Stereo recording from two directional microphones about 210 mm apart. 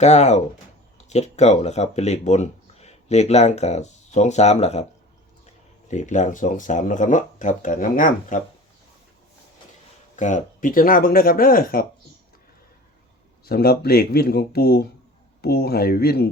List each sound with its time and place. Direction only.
0.0 s speech: 35° left (ahead or behind)
5.9 s speech: 35° left (ahead or behind)
10.2 s speech: 35° left (ahead or behind)
13.4 s speech: 45° left (ahead or behind)